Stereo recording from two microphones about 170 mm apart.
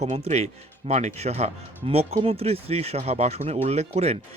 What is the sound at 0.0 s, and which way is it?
Speech, 40° right (ahead or behind).